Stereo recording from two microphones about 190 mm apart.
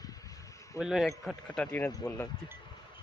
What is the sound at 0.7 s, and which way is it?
Speech, 5° right (ahead or behind).